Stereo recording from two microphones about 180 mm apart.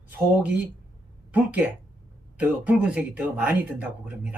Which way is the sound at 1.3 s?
10° right (ahead or behind).